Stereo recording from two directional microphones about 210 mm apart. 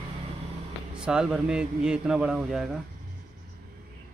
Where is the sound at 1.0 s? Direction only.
5° right (ahead or behind).